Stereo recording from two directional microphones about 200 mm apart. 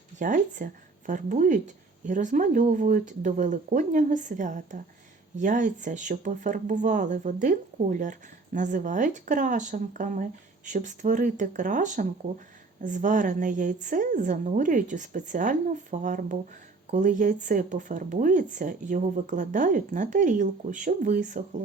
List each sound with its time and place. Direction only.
0.2 s speech: 40° right (ahead or behind)